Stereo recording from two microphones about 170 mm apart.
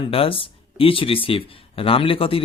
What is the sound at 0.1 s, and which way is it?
Speech, 30° left (ahead or behind).